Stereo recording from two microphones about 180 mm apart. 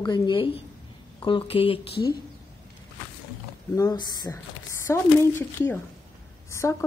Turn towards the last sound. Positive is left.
turn(degrees=15)  # may be behind; listen again after turning